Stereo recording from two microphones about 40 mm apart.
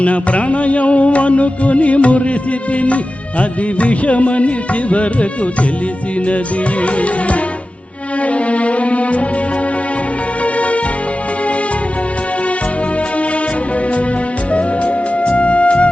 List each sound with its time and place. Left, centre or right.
0.0 s music: left
6.8 s music: left
10.4 s music: left
14.5 s music: left